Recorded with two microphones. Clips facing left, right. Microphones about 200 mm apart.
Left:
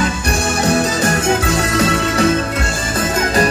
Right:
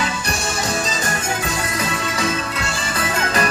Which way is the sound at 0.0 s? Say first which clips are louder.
Left 6 dB; 55° left (ahead or behind).